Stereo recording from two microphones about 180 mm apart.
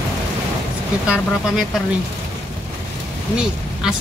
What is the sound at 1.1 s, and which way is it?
Speech, 5° right (ahead or behind).